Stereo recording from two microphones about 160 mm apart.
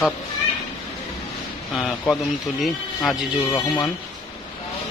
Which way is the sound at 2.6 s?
Centre (ahead or behind).